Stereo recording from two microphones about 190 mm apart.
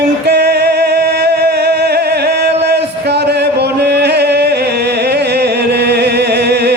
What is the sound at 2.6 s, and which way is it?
Chant, 60° right (ahead or behind).